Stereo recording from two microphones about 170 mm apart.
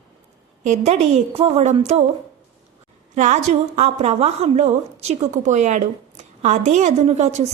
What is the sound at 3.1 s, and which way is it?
A woman's voice, 45° right (ahead or behind).